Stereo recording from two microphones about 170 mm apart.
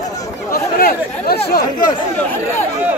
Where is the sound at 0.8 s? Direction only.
60° left (ahead or behind).